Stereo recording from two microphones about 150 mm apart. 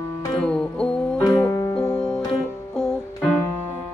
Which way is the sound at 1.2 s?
20° left (ahead or behind).